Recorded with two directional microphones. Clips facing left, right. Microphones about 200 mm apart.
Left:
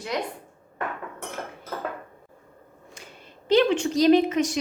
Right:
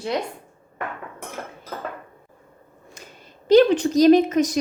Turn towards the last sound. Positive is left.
turn(degrees=-40)  # may be behind; listen again after turning